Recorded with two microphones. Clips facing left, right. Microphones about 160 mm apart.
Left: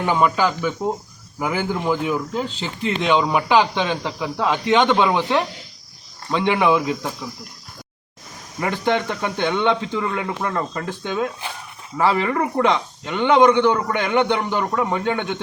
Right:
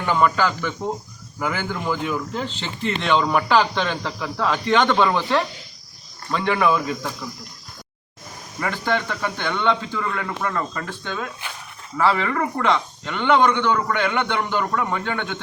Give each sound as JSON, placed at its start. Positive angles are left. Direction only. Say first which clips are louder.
{"t": 0.0, "sound": "speech", "louder": "left 1 dB", "side_deg": 15}
{"t": 8.6, "sound": "speech", "louder": "left 3 dB", "side_deg": 20}
{"t": 11.0, "sound": "speech", "louder": "left 6 dB", "side_deg": 15}